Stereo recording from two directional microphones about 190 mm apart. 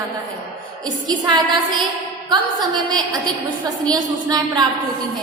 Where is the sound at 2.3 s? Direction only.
20° right (ahead or behind).